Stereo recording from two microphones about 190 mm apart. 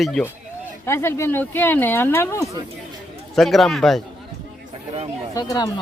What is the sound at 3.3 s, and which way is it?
Speech, centre (ahead or behind).